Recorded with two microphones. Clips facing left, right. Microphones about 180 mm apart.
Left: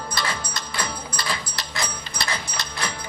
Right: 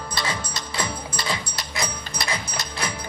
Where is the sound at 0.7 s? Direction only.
25° right (ahead or behind).